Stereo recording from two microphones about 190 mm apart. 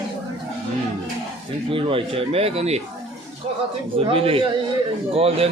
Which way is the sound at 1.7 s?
30° right (ahead or behind).